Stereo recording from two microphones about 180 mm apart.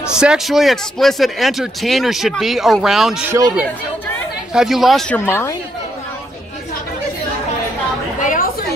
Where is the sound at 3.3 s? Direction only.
20° right (ahead or behind).